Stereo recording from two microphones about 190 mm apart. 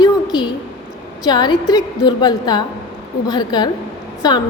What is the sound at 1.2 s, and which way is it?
A woman's voice, 20° left (ahead or behind).